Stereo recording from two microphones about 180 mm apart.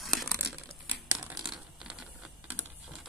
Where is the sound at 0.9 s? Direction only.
10° right (ahead or behind).